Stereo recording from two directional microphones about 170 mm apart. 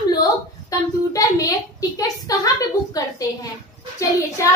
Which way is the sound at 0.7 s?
20° left (ahead or behind).